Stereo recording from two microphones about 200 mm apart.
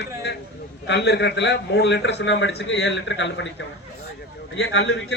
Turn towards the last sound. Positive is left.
turn(degrees=65)  # may be behind; listen again after turning